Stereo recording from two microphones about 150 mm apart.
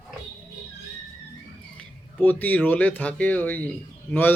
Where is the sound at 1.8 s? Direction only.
10° left (ahead or behind).